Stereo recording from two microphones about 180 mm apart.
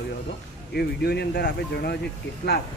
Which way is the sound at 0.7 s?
60° left (ahead or behind).